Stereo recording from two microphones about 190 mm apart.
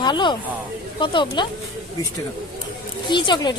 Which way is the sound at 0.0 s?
25° left (ahead or behind).